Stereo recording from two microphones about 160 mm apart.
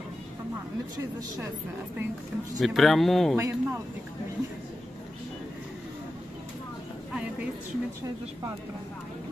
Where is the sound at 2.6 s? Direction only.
Centre (ahead or behind).